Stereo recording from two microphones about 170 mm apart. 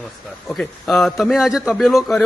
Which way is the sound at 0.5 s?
Centre (ahead or behind).